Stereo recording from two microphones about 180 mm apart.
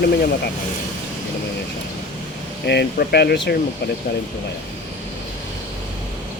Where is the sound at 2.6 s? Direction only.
65° left (ahead or behind).